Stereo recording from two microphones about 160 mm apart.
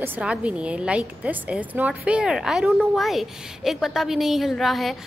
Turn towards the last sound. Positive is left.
turn(degrees=0)  # may be behind; listen again after turning